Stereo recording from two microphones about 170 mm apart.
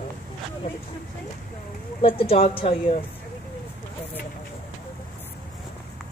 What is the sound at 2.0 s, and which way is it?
Speech, 35° left (ahead or behind).